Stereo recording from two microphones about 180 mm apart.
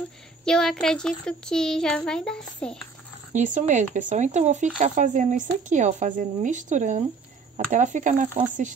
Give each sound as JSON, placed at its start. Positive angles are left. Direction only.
{"t": 0.5, "sound": "speech", "side_deg": 5}
{"t": 3.3, "sound": "speech", "side_deg": -45}